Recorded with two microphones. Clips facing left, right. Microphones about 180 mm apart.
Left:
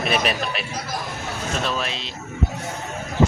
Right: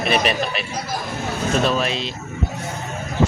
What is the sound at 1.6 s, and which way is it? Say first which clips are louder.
Speech: right 6 dB; 10° right (ahead or behind).